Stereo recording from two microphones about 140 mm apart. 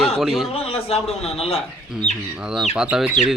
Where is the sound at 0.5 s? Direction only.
45° left (ahead or behind).